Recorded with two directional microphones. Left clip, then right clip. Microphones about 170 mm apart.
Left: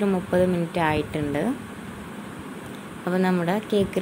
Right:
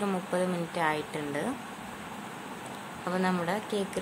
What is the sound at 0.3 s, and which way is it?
Speech, 10° left (ahead or behind).